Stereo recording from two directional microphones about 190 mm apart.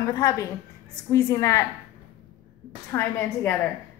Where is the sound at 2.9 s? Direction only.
15° left (ahead or behind).